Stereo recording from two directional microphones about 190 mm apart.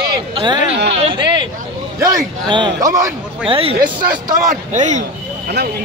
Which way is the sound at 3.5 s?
30° right (ahead or behind).